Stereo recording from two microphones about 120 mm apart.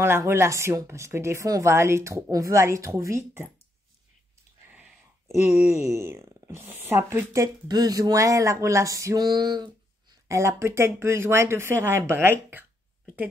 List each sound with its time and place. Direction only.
0.0 s speech: 20° right (ahead or behind)
5.7 s speech: 25° right (ahead or behind)
10.2 s speech: 25° right (ahead or behind)